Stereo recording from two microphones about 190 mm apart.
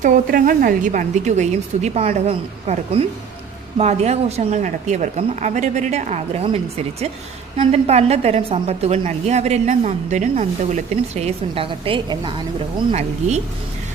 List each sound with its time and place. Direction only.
0.0 s a woman's voice: 45° right (ahead or behind); by 12.3 s 25° right (ahead or behind)
12.9 s a woman's voice: 35° right (ahead or behind)